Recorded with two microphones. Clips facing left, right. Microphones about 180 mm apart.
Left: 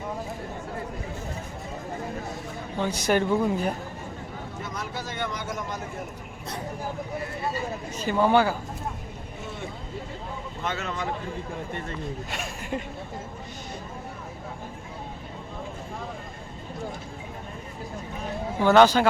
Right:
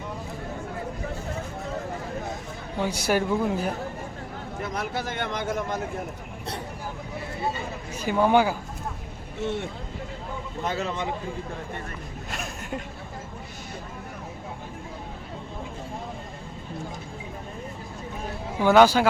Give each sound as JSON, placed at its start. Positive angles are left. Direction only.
{"t": 2.7, "sound": "speech", "side_deg": -10}
{"t": 4.6, "sound": "speech", "side_deg": -60}
{"t": 7.9, "sound": "speech", "side_deg": -10}
{"t": 10.6, "sound": "speech", "side_deg": -35}
{"t": 12.3, "sound": "speech", "side_deg": 0}
{"t": 18.6, "sound": "speech", "side_deg": -10}